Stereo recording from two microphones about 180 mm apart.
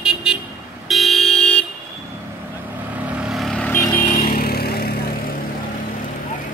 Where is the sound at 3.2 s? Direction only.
Centre (ahead or behind).